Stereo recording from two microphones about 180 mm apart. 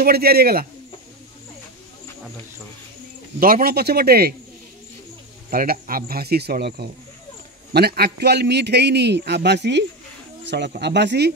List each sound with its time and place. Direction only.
0.0 s speech: 60° right (ahead or behind)
3.3 s speech: 50° right (ahead or behind)
5.5 s a man's voice: 50° right (ahead or behind); by 11.3 s 70° right (ahead or behind)